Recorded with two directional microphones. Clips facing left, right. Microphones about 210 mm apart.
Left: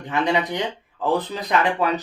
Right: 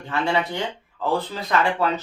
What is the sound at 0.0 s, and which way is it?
Speech, 15° left (ahead or behind).